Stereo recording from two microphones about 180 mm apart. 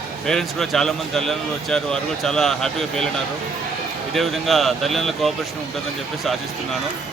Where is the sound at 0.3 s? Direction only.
Centre (ahead or behind).